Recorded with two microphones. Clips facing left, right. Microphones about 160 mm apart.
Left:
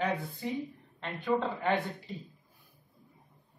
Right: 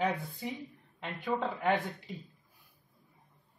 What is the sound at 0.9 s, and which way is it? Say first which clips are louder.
Speech: left 3 dB; 10° right (ahead or behind).